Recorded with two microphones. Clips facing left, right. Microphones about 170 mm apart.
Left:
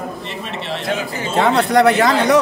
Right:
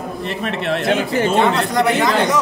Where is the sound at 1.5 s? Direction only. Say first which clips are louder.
Left 4 dB; 65° left (ahead or behind).